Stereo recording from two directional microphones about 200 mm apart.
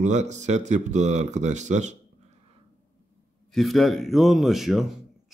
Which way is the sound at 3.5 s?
Centre (ahead or behind).